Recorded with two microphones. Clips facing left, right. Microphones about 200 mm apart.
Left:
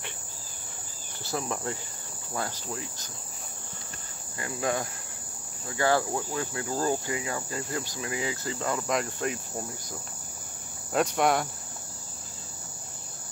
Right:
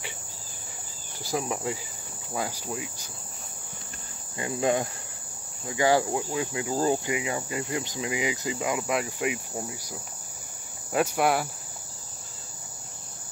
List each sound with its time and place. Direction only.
1.2 s cricket: 10° right (ahead or behind)
4.4 s insect: 20° right (ahead or behind)
5.7 s cricket: 15° right (ahead or behind)